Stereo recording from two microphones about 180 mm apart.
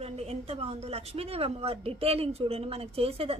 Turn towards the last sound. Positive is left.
turn(degrees=-35)  # may be behind; listen again after turning